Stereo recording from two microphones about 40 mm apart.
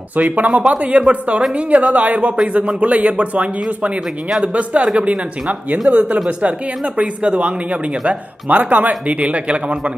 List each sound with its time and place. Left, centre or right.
0.4 s speech: right
4.5 s speech: right